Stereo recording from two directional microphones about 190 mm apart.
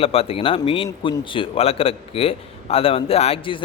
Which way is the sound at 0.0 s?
30° left (ahead or behind).